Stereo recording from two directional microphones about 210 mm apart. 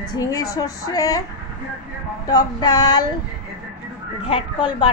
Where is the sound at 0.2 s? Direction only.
15° left (ahead or behind).